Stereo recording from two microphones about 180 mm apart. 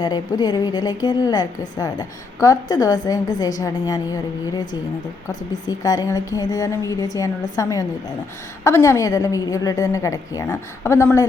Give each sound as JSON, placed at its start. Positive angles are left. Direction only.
{"t": 0.0, "sound": "a woman's voice", "side_deg": 25}
{"t": 5.6, "sound": "a woman's voice", "side_deg": 20}